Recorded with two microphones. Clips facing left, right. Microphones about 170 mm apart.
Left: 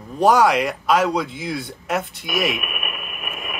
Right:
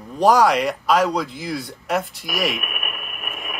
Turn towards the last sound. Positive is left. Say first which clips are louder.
# left 1 dB
turn(degrees=0)  # may be behind; listen again after turning